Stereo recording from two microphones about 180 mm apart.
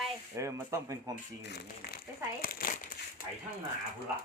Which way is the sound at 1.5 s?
65° left (ahead or behind).